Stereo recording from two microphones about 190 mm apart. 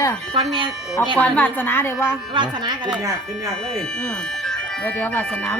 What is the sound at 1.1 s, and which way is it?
Speech, 10° left (ahead or behind).